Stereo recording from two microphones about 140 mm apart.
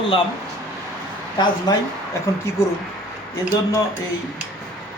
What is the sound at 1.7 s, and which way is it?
Speech, 30° left (ahead or behind).